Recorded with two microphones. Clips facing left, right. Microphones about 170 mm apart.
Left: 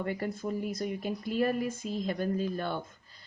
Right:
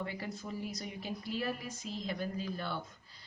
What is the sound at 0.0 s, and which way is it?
Speech, 50° left (ahead or behind).